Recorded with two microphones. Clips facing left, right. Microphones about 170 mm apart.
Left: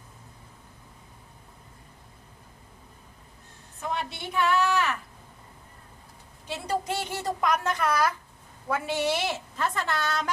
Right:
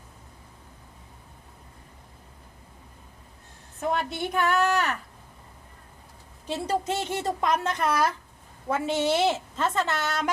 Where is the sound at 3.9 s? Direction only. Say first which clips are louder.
Right 4 dB; 50° right (ahead or behind).